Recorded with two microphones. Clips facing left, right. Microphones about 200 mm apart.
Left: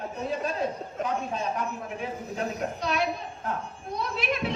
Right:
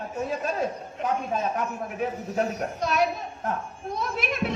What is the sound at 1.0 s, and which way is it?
Speech, 40° left (ahead or behind).